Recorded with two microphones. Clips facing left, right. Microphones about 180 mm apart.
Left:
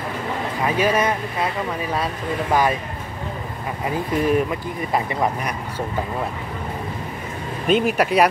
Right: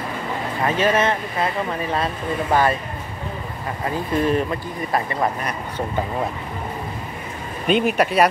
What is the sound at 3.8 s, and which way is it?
Speech, 10° left (ahead or behind).